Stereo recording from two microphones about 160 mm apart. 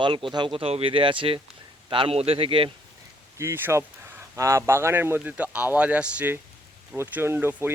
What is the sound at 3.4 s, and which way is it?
Speech, 15° right (ahead or behind).